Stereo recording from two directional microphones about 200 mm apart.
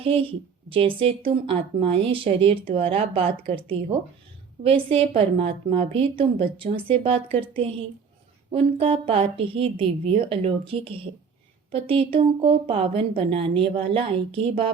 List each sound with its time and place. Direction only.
0.7 s a woman's voice: 25° right (ahead or behind)
4.6 s a woman's voice: 30° right (ahead or behind)